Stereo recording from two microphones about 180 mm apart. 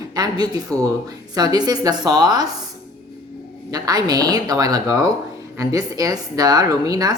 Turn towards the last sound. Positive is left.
turn(degrees=-20)  # may be behind; listen again after turning